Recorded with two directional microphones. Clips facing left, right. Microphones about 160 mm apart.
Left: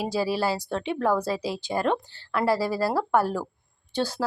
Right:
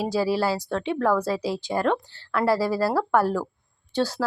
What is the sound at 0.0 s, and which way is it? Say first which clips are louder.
A woman's voice: right 2 dB; 20° left (ahead or behind).